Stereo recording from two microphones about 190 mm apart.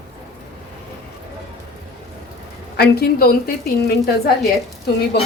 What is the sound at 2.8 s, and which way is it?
Speech, 55° left (ahead or behind).